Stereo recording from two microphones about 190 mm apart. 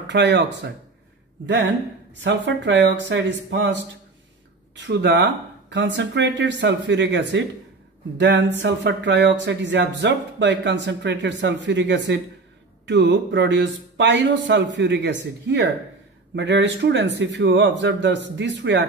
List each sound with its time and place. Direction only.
0.1 s speech: 65° right (ahead or behind)
4.7 s speech: 65° right (ahead or behind)